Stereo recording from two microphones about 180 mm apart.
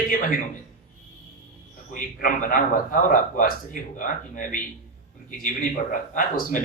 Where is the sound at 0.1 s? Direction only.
50° left (ahead or behind).